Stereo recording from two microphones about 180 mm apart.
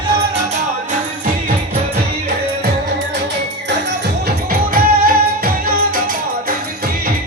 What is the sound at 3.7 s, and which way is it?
Music, 75° right (ahead or behind).